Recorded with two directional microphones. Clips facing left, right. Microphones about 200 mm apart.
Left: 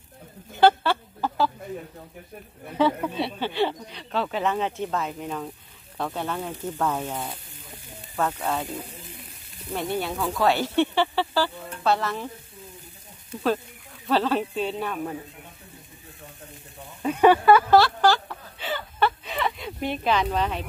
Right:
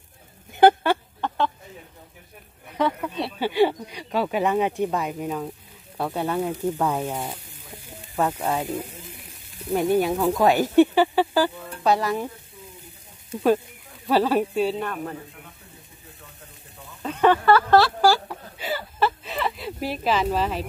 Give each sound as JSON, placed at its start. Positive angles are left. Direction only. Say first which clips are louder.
{"t": 0.6, "sound": "a sound", "louder": "right 3 dB", "side_deg": -15}
{"t": 1.2, "sound": "a sound", "louder": "left 3 dB", "side_deg": 5}
{"t": 3.0, "sound": "speech", "louder": "left 1 dB", "side_deg": 0}
{"t": 3.3, "sound": "speech", "louder": "right 10 dB", "side_deg": -10}
{"t": 8.2, "sound": "speech", "louder": "right 2 dB", "side_deg": -10}
{"t": 14.0, "sound": "speech", "louder": "right 3 dB", "side_deg": -10}
{"t": 14.8, "sound": "speech", "louder": "even", "side_deg": 5}
{"t": 17.0, "sound": "speech", "louder": "left 2 dB", "side_deg": 10}
{"t": 17.6, "sound": "a sound", "louder": "right 1 dB", "side_deg": 0}